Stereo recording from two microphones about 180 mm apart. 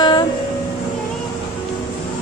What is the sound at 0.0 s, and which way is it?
Music, 25° left (ahead or behind).